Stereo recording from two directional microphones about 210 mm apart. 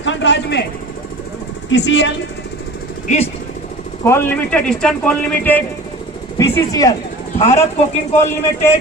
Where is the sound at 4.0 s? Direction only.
10° left (ahead or behind).